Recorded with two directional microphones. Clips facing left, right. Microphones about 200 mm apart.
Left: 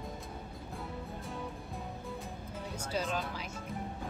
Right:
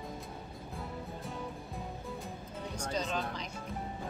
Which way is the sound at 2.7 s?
5° left (ahead or behind).